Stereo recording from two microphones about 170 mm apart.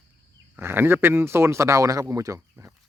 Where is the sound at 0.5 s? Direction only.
10° right (ahead or behind).